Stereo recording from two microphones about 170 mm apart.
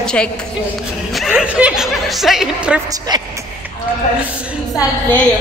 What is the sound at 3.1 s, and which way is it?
Speech, 25° right (ahead or behind).